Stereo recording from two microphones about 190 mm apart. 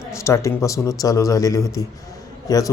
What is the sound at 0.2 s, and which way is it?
Speech, 15° left (ahead or behind).